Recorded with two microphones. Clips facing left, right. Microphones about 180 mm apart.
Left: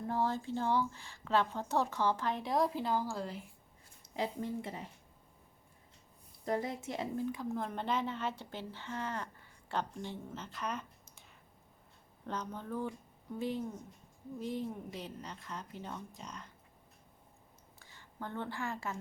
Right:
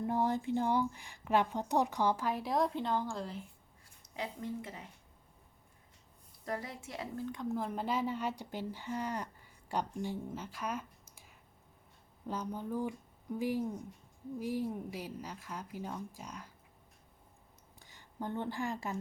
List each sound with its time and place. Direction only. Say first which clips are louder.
0.1 s speech: right 1 dB; 15° right (ahead or behind); by 3.3 s 5° left (ahead or behind)
4.0 s speech: left 3 dB; 30° left (ahead or behind)
6.4 s speech: left 5 dB; 25° left (ahead or behind)
7.3 s speech: right 1 dB; 5° left (ahead or behind)
12.2 s speech: right 2 dB; 10° right (ahead or behind)
17.7 s a woman's voice: right 3 dB; 15° right (ahead or behind)